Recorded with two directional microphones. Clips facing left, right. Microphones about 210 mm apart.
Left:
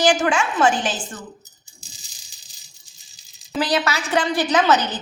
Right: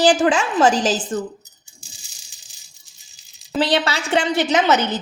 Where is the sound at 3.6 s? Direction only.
30° right (ahead or behind).